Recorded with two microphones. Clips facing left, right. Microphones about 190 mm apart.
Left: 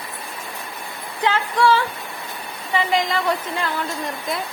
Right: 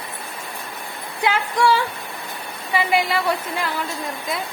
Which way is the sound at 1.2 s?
10° right (ahead or behind).